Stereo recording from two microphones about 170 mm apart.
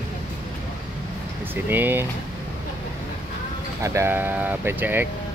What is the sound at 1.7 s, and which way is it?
Speech, 10° right (ahead or behind).